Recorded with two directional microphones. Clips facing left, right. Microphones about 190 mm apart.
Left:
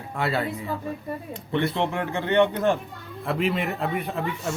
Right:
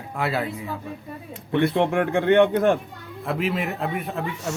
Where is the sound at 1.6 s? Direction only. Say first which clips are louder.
Right 7 dB; 55° right (ahead or behind).